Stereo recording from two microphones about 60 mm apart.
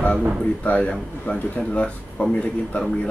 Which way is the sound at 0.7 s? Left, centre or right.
Left.